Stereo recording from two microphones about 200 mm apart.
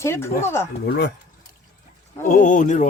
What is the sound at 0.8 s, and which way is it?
Speech, 50° left (ahead or behind).